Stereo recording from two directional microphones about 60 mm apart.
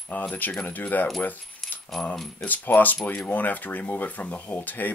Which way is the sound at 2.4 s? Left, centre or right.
Left.